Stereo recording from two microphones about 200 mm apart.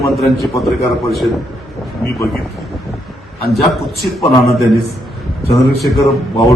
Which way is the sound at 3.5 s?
Centre (ahead or behind).